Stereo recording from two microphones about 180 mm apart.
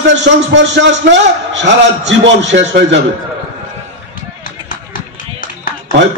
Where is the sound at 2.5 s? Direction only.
85° right.